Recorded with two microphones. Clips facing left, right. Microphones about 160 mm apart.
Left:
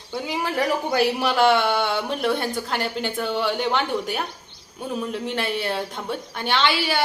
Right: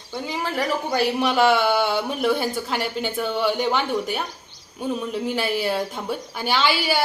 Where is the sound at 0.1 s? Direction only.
5° left (ahead or behind).